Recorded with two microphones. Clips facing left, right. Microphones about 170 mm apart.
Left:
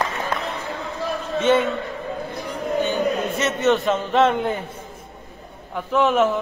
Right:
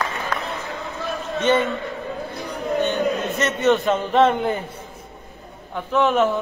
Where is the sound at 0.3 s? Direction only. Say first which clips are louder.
Left 1 dB; 25° left (ahead or behind).